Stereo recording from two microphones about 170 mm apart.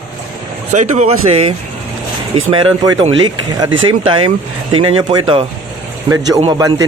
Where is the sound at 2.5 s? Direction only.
25° right (ahead or behind).